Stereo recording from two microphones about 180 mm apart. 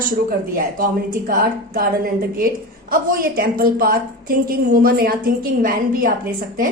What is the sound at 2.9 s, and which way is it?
A woman's voice, 55° right (ahead or behind).